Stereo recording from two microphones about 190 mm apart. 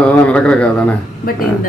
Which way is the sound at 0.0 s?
5° left (ahead or behind).